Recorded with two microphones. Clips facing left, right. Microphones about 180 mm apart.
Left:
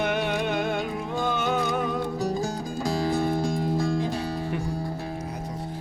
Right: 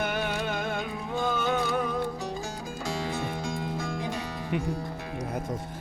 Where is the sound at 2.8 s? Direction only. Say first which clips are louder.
Left 7 dB; 35° left (ahead or behind).